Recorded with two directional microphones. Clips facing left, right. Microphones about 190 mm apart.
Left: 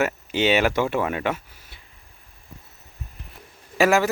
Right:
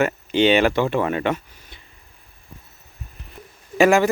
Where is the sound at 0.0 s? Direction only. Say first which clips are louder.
Right 4 dB; 5° left (ahead or behind).